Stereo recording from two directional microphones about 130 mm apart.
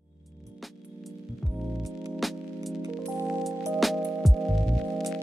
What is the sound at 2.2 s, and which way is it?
Music, centre (ahead or behind).